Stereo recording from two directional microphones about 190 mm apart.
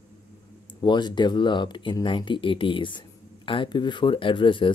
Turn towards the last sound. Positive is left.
turn(degrees=25)  # may be behind; listen again after turning